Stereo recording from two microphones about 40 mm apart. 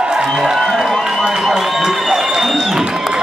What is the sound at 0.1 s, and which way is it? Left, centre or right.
Music, centre.